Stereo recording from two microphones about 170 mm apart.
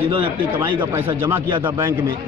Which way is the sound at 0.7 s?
10° right (ahead or behind).